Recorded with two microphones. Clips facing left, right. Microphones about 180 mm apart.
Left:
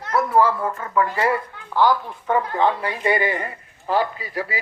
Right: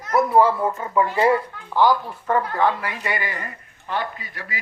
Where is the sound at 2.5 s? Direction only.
20° left (ahead or behind).